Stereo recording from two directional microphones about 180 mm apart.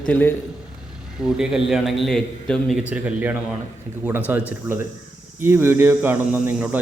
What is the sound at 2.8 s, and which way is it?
Speech, 5° right (ahead or behind).